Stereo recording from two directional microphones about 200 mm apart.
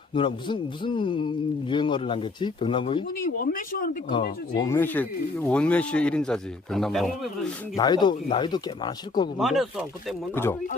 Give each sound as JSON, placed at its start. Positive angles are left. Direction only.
{"t": 0.1, "sound": "a man's voice", "side_deg": 25}
{"t": 3.2, "sound": "speech", "side_deg": 45}
{"t": 4.6, "sound": "speech", "side_deg": 10}
{"t": 7.8, "sound": "a man's voice", "side_deg": 20}
{"t": 9.4, "sound": "speech", "side_deg": 0}
{"t": 10.3, "sound": "speech", "side_deg": 10}